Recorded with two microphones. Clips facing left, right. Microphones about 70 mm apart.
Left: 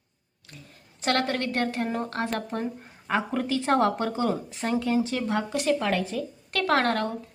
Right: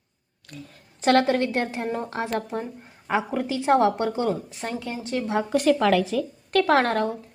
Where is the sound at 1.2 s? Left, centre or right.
Centre.